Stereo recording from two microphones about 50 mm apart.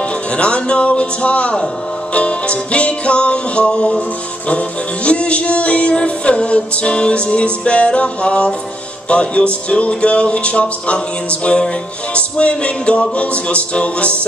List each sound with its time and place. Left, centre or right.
0.0 s music: left